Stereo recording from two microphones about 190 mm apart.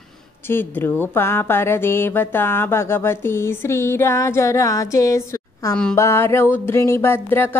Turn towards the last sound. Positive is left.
turn(degrees=10)  # may be behind; listen again after turning